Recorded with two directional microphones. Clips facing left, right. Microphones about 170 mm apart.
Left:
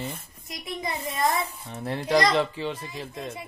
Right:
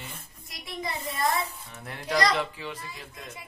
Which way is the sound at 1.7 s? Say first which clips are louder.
Left 7 dB; 30° left (ahead or behind).